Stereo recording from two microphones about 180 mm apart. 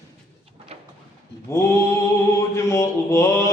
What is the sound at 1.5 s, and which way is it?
Mantra, 15° left (ahead or behind).